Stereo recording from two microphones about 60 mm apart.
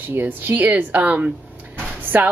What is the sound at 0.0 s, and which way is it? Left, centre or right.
A woman's voice, right.